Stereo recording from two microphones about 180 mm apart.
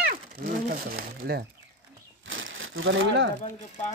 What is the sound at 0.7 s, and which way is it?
Speech, 60° right (ahead or behind).